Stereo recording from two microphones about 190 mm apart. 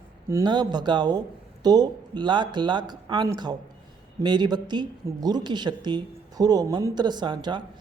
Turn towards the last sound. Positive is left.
turn(degrees=-25)  # may be behind; listen again after turning